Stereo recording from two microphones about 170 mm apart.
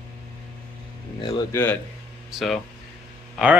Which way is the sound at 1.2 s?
20° left (ahead or behind).